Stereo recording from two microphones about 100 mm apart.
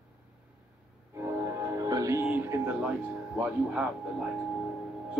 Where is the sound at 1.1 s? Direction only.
25° right (ahead or behind).